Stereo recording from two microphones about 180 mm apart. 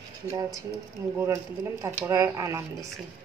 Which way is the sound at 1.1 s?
15° right (ahead or behind).